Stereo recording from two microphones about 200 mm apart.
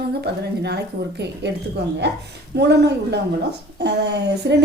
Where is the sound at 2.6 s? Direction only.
55° right (ahead or behind).